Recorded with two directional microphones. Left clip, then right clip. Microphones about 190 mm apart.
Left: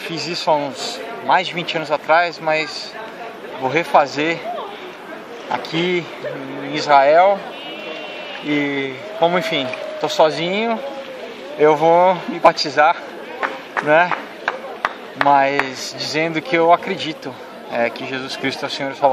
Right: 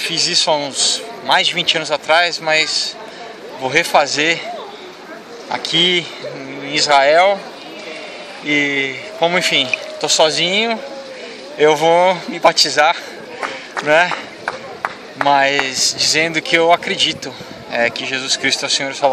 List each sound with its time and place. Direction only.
0.0 s a man's voice: 5° right (ahead or behind)
5.5 s a man's voice: 5° right (ahead or behind)
8.5 s a man's voice: 5° right (ahead or behind)
14.4 s run: 45° right (ahead or behind)
15.2 s speech: 5° right (ahead or behind)